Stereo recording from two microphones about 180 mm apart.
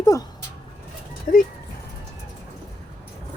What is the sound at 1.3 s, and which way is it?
Speech, 55° left (ahead or behind).